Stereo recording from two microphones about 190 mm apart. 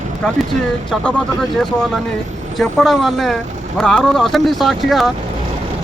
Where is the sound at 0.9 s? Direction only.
Centre (ahead or behind).